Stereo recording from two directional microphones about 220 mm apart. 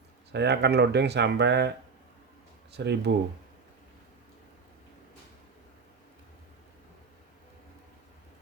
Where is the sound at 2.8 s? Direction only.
50° right (ahead or behind).